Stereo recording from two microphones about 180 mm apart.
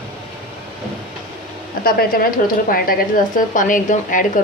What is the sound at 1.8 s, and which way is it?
Speech, 55° left (ahead or behind).